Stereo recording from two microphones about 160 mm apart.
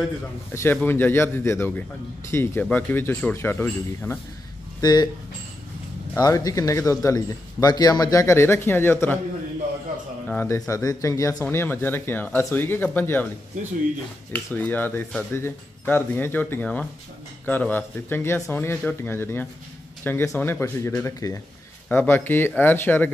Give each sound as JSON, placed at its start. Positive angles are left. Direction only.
{"t": 0.5, "sound": "speech", "side_deg": 15}
{"t": 4.8, "sound": "a man's voice", "side_deg": 25}
{"t": 6.1, "sound": "a man's voice", "side_deg": 20}
{"t": 10.2, "sound": "a man's voice", "side_deg": 10}
{"t": 14.3, "sound": "a man's voice", "side_deg": 10}